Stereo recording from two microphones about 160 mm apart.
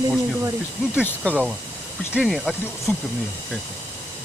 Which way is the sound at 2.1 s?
Centre (ahead or behind).